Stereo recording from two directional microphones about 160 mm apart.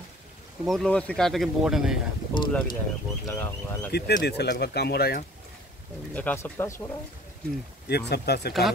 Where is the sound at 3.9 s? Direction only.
90° left.